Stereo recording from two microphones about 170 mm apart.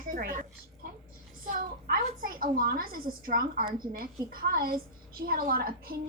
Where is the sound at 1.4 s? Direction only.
55° right (ahead or behind).